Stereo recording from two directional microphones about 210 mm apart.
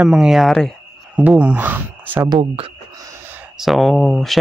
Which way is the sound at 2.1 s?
20° right (ahead or behind).